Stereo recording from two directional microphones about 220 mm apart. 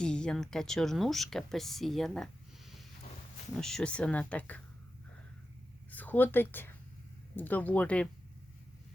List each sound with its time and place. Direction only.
0.0 s speech: 5° left (ahead or behind)
5.9 s a woman's voice: 10° left (ahead or behind)